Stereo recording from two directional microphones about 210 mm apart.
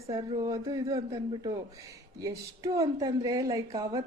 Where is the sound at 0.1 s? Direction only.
20° right (ahead or behind).